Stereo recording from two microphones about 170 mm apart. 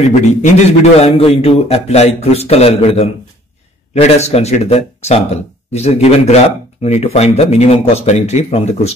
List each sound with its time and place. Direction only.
0.0 s a man's voice: 40° left (ahead or behind)